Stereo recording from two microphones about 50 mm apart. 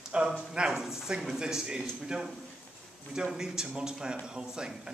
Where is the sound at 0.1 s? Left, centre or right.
Right.